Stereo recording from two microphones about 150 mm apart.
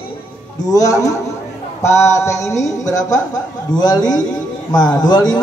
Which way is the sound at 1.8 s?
20° left (ahead or behind).